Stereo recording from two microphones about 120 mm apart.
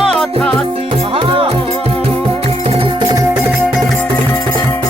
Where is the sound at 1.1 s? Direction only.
50° right (ahead or behind).